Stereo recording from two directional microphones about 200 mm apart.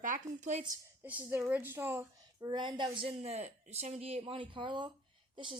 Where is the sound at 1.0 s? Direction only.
10° right (ahead or behind).